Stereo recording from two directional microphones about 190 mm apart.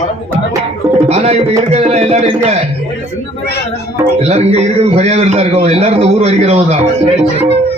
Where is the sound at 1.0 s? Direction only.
35° right (ahead or behind).